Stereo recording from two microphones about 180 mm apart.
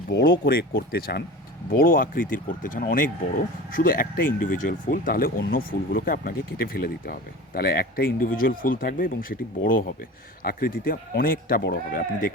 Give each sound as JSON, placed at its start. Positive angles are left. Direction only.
{"t": 0.1, "sound": "speech", "side_deg": 65}